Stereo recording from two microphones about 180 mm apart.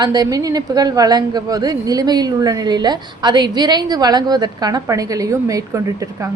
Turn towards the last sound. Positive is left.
turn(degrees=-20)  # may be behind; listen again after turning